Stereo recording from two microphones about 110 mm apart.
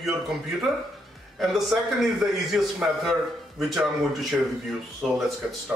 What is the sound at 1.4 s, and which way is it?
A man's voice, centre (ahead or behind).